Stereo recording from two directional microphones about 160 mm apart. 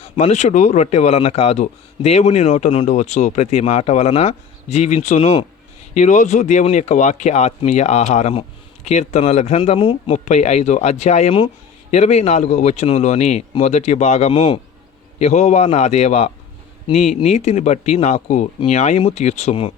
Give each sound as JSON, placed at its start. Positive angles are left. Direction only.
{"t": 0.0, "sound": "speech", "side_deg": 45}
{"t": 15.2, "sound": "speech", "side_deg": 45}